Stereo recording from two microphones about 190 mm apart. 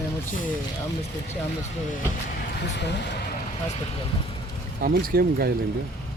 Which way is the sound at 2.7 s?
65° left (ahead or behind).